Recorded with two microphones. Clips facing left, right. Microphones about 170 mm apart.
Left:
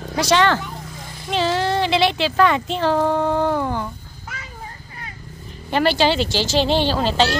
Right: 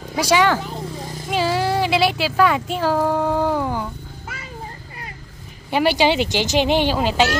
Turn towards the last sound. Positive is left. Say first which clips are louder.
# even
turn(degrees=-10)  # may be behind; listen again after turning